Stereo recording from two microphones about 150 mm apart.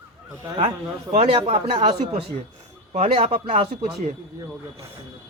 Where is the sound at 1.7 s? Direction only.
30° right (ahead or behind).